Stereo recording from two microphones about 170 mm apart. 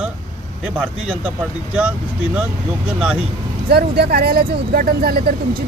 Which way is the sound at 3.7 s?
65° right (ahead or behind).